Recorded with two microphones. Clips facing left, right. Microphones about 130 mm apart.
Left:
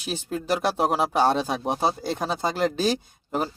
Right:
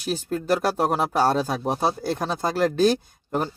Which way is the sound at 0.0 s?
Centre (ahead or behind).